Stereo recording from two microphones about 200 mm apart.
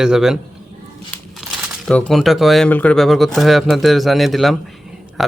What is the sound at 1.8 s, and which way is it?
Speech, centre (ahead or behind).